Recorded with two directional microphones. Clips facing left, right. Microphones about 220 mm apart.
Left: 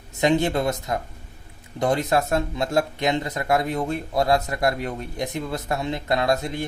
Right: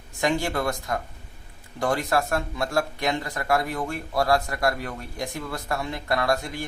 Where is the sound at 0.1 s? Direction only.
20° left (ahead or behind).